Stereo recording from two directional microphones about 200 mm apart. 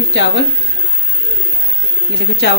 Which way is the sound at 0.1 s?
60° left (ahead or behind).